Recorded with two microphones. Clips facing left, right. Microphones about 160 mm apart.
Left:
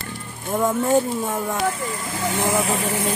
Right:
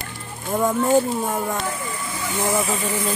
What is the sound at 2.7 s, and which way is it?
Vehicle, 80° left.